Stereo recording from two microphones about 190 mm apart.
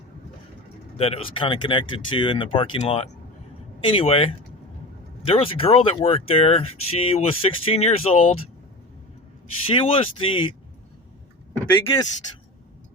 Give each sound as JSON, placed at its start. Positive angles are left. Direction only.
{"t": 0.9, "sound": "speech", "side_deg": 30}
{"t": 9.7, "sound": "speech", "side_deg": 30}
{"t": 11.6, "sound": "speech", "side_deg": 15}